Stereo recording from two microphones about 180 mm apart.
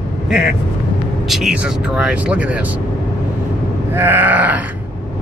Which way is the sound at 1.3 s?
5° right (ahead or behind).